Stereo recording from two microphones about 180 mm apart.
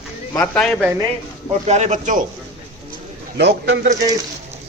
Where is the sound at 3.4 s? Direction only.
70° right (ahead or behind).